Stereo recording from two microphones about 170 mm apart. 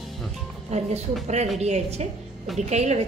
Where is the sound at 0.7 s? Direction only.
40° right (ahead or behind).